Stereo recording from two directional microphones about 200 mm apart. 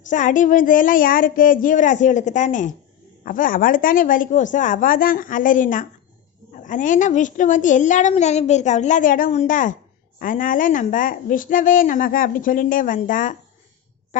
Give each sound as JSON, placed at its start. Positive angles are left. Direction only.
{"t": 0.1, "sound": "a woman's voice", "side_deg": 40}